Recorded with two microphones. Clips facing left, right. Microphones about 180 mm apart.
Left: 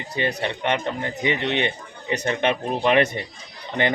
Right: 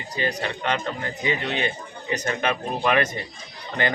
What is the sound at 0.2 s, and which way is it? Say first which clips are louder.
Speech: left 2 dB; 20° left (ahead or behind).